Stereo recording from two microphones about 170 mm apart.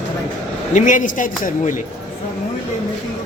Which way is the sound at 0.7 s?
45° left (ahead or behind).